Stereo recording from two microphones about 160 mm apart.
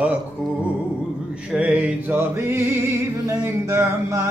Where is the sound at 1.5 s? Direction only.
10° right (ahead or behind).